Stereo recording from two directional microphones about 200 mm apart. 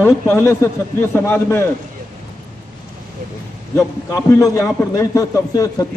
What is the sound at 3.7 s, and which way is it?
A man's voice, 15° left (ahead or behind).